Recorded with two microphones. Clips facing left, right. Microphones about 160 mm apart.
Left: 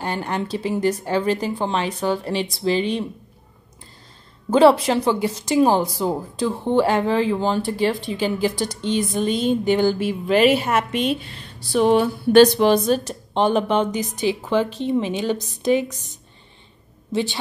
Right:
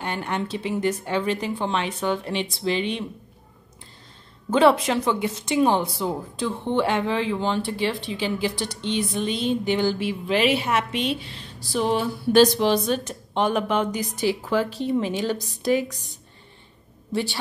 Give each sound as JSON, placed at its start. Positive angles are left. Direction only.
{"t": 0.0, "sound": "speech", "side_deg": 35}
{"t": 4.5, "sound": "a woman's voice", "side_deg": 35}
{"t": 15.9, "sound": "a woman's voice", "side_deg": 0}
{"t": 17.1, "sound": "a woman's voice", "side_deg": 20}